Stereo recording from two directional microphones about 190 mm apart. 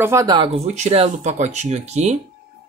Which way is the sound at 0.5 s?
35° right (ahead or behind).